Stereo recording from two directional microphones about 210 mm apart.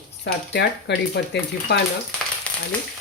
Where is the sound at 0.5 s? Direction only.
50° left (ahead or behind).